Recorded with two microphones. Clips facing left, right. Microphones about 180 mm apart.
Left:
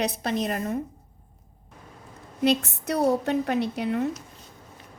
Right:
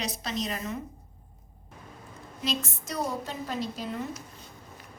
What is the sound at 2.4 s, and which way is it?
Speech, 65° left (ahead or behind).